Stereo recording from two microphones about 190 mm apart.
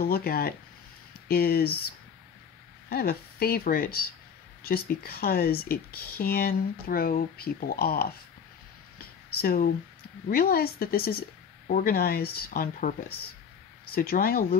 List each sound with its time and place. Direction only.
0.0 s speech: 55° left (ahead or behind)
2.9 s speech: 55° left (ahead or behind)
8.9 s a sound: 50° left (ahead or behind)
10.3 s speech: 55° left (ahead or behind)
13.9 s speech: 50° left (ahead or behind)